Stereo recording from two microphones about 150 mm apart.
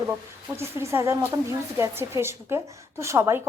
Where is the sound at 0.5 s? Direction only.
15° right (ahead or behind).